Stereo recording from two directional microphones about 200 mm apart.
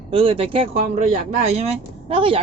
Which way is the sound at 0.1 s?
30° right (ahead or behind).